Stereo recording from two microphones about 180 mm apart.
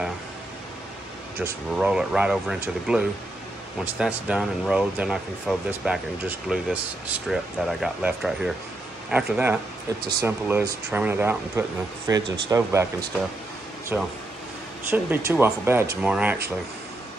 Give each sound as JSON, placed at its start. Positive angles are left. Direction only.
{"t": 1.4, "sound": "speech", "side_deg": -5}
{"t": 13.9, "sound": "speech", "side_deg": -10}